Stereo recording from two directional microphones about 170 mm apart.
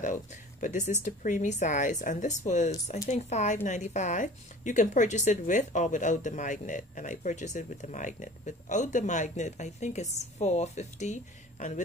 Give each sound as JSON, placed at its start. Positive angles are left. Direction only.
{"t": 0.0, "sound": "speech", "side_deg": 50}